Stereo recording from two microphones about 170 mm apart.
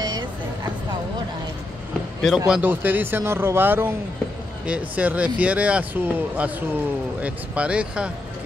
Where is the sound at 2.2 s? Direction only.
5° right (ahead or behind).